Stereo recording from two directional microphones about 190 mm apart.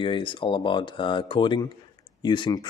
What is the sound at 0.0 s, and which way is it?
Speech, 25° left (ahead or behind).